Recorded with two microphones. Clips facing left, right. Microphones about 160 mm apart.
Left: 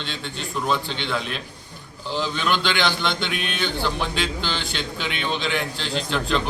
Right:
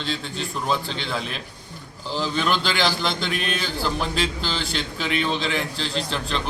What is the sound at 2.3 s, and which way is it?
Speech, 40° right (ahead or behind).